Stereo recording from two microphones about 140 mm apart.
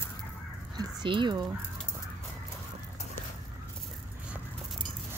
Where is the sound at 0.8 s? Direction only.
35° right (ahead or behind).